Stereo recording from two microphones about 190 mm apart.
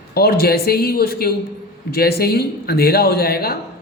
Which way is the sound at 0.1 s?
55° left (ahead or behind).